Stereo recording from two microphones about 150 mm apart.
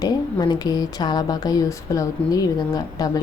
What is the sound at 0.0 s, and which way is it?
Speech, 25° left (ahead or behind).